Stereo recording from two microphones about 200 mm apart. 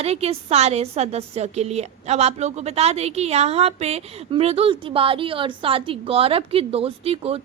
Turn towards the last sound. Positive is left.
turn(degrees=-30)  # may be behind; listen again after turning